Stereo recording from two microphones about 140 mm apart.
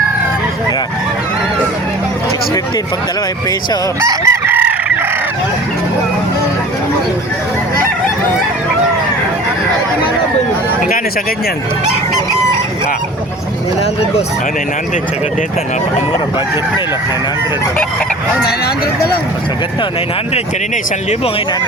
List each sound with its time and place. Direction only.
4.1 s chicken: 20° right (ahead or behind)